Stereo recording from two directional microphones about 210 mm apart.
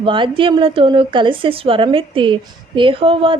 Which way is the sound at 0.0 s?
25° right (ahead or behind).